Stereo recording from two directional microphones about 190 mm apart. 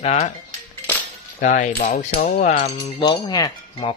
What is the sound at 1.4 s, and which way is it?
Music, 45° left (ahead or behind).